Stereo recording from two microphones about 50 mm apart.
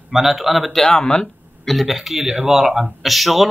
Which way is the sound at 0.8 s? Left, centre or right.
Centre.